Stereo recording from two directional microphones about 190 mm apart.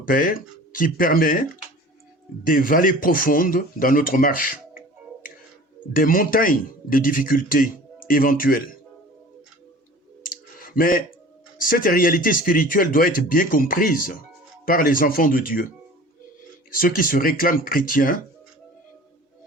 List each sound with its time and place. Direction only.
0.1 s a man's voice: 50° left (ahead or behind)
5.9 s a man's voice: 45° left (ahead or behind)
10.2 s clicking: 50° left (ahead or behind)
11.5 s a man's voice: 50° left (ahead or behind)
16.8 s a man's voice: 50° left (ahead or behind)